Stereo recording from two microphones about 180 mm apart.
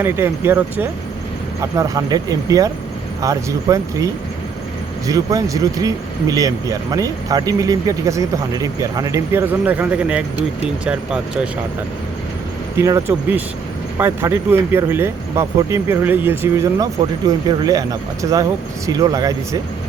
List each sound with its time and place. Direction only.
0.0 s speech: 10° right (ahead or behind)
12.7 s speech: 15° right (ahead or behind)